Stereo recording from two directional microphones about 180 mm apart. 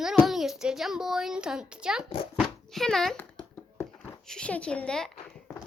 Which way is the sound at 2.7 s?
Centre (ahead or behind).